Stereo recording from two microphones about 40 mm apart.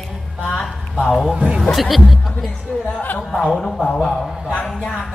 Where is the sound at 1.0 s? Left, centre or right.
Centre.